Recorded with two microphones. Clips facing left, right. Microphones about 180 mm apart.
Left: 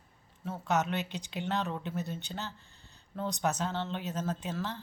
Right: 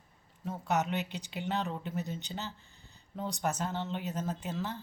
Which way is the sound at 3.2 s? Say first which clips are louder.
Left 2 dB; 10° right (ahead or behind).